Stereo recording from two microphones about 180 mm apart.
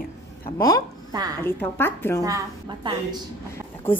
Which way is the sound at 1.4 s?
10° left (ahead or behind).